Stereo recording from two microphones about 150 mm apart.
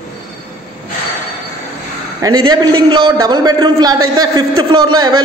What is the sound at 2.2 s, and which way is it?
A man's voice, 25° right (ahead or behind).